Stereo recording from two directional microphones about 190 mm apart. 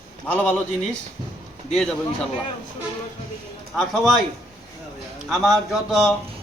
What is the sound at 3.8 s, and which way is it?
Speech, centre (ahead or behind).